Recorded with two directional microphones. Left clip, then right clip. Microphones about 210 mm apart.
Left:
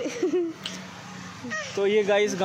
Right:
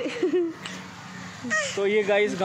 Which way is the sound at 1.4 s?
50° right (ahead or behind).